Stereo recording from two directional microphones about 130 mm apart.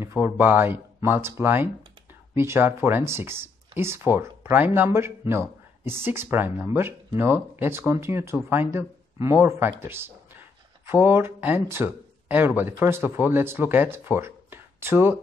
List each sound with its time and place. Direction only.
0.0 s speech: 15° right (ahead or behind)